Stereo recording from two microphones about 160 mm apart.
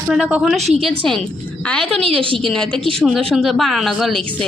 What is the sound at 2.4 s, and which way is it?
A woman's voice, 5° left (ahead or behind).